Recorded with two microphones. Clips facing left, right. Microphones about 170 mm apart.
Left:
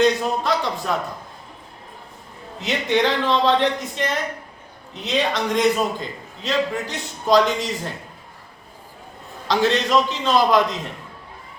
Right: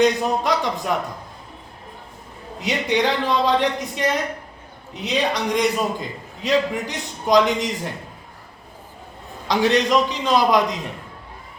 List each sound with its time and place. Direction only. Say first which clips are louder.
0.0 s a man's voice: right 1 dB; 15° right (ahead or behind)
2.6 s a man's voice: left 1 dB; 15° right (ahead or behind)
5.0 s a man's voice: even; 15° right (ahead or behind)
9.5 s a man's voice: right 1 dB; 15° right (ahead or behind)